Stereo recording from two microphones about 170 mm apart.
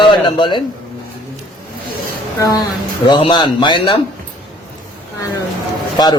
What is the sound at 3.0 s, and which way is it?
Speech, 25° left (ahead or behind).